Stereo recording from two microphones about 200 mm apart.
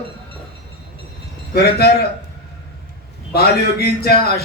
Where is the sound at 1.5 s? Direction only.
50° left (ahead or behind).